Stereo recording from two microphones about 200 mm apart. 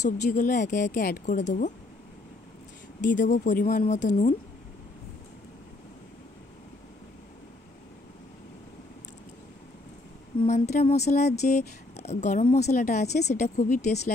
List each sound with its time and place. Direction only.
0.0 s speech: 40° left (ahead or behind)
3.0 s speech: 40° left (ahead or behind)
10.4 s speech: 35° left (ahead or behind)